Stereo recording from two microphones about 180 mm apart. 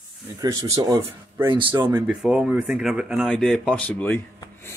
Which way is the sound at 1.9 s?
5° right (ahead or behind).